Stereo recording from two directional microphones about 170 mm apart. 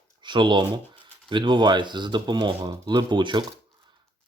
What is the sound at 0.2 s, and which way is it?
Speech, 25° right (ahead or behind).